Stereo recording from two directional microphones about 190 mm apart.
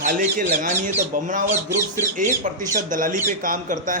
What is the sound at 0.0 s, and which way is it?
Speech, 45° right (ahead or behind).